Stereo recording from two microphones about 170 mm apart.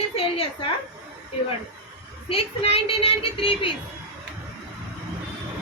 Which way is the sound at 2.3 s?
35° left (ahead or behind).